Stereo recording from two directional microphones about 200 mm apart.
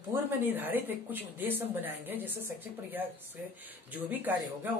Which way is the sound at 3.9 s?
10° right (ahead or behind).